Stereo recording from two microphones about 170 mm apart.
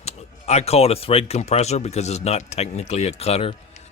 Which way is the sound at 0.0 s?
40° left (ahead or behind).